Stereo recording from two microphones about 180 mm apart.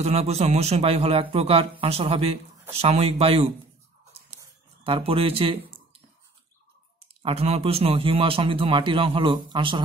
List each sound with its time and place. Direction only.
0.0 s a man's voice: 35° right (ahead or behind)
4.8 s a man's voice: 30° right (ahead or behind)
7.2 s a man's voice: 35° right (ahead or behind)